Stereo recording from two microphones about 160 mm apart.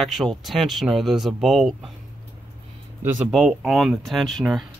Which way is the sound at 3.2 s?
5° right (ahead or behind).